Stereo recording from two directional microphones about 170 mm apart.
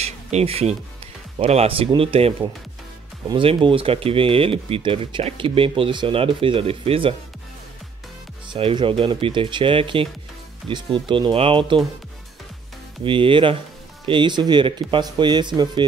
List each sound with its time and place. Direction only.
0.0 s speech: 40° right (ahead or behind)
8.5 s speech: 30° right (ahead or behind)
11.1 s speech: 30° right (ahead or behind)
13.0 s speech: 30° right (ahead or behind)